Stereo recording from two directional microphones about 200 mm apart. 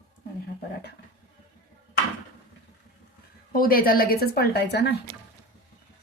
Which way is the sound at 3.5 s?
45° left (ahead or behind).